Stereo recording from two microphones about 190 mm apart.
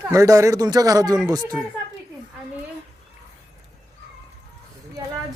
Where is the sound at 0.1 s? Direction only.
15° right (ahead or behind).